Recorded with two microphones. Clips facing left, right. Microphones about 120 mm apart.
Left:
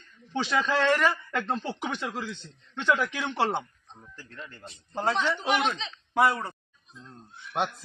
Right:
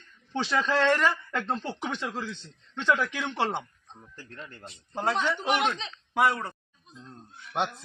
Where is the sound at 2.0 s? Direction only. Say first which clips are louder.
Even; 15° left (ahead or behind).